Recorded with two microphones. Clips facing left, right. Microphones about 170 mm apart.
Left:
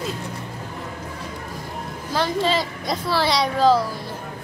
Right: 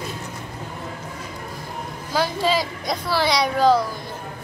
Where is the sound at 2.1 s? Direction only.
5° right (ahead or behind).